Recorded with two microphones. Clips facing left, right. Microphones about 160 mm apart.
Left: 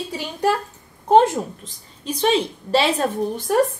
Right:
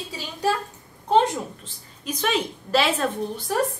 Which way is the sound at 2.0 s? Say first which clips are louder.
Left 5 dB; 30° left (ahead or behind).